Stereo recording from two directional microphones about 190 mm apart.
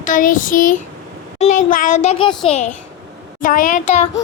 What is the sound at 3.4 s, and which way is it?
Child singing, 45° left (ahead or behind).